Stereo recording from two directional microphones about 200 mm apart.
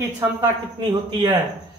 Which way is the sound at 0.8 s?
25° right (ahead or behind).